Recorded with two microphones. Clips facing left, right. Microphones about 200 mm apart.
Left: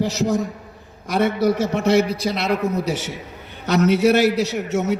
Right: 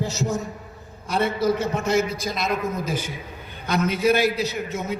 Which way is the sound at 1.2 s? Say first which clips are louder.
Left 4 dB; 80° left.